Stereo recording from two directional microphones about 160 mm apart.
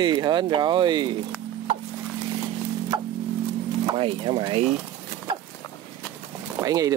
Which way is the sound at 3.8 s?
30° right (ahead or behind).